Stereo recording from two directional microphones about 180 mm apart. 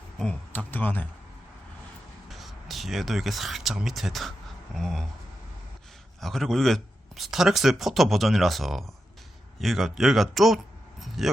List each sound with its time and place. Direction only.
0.2 s speech: 5° left (ahead or behind)
2.3 s speech: centre (ahead or behind)
6.1 s speech: centre (ahead or behind)